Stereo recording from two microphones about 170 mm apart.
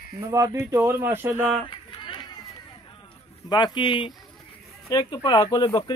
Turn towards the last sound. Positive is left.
turn(degrees=25)  # may be behind; listen again after turning